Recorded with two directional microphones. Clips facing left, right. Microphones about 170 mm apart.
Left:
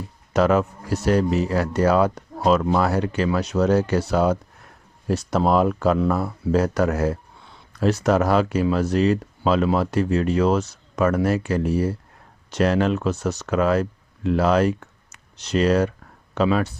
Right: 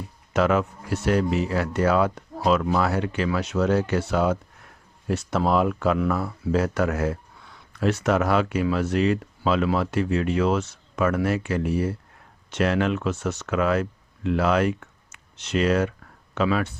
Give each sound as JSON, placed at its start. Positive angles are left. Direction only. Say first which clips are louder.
{"t": 0.3, "sound": "speech", "louder": "left 3 dB", "side_deg": 40}